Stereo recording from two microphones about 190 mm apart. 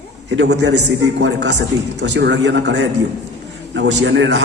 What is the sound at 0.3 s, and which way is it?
A man's voice, 65° right (ahead or behind).